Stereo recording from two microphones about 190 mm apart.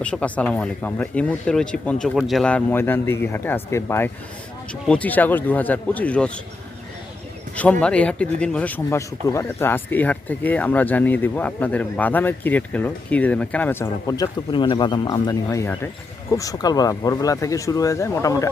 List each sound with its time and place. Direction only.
0.0 s speech: 5° left (ahead or behind)
7.5 s speech: 5° left (ahead or behind)